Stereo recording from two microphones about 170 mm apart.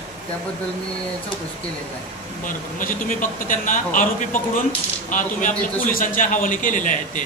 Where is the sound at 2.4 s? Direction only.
50° left (ahead or behind).